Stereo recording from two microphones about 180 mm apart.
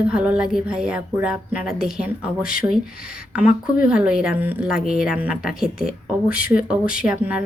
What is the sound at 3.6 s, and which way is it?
Speech, 5° right (ahead or behind).